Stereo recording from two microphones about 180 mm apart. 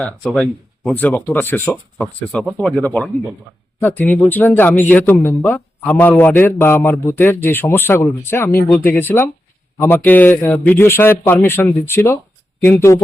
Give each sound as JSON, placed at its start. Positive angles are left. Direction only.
{"t": 0.0, "sound": "speech", "side_deg": 5}